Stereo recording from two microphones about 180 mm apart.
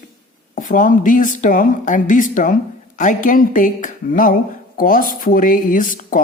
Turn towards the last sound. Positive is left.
turn(degrees=50)  # may be behind; listen again after turning